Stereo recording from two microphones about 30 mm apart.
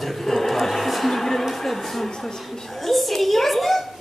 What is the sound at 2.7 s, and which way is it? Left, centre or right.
Speech, centre.